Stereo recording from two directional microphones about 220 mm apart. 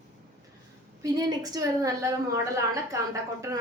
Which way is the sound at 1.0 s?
15° right (ahead or behind).